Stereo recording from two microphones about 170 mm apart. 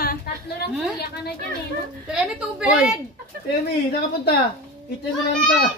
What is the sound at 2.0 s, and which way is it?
Speech, 5° right (ahead or behind).